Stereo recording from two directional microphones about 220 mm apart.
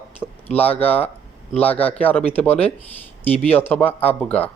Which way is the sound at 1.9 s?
5° left (ahead or behind).